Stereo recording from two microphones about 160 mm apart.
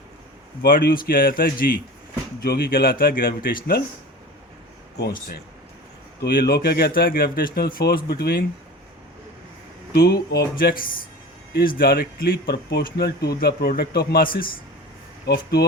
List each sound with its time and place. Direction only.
0.6 s speech: 70° left (ahead or behind)
2.4 s speech: 75° left (ahead or behind)
6.2 s speech: 75° left (ahead or behind)
9.9 s a man's voice: 80° left
15.3 s a man's voice: 80° left